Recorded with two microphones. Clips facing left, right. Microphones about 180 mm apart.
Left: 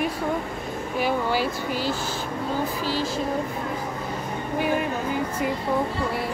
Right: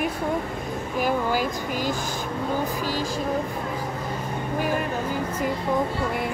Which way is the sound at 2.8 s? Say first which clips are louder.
Left 1 dB; 15° right (ahead or behind).